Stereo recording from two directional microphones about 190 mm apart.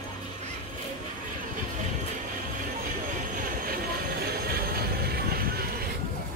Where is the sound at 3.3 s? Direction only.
50° right (ahead or behind).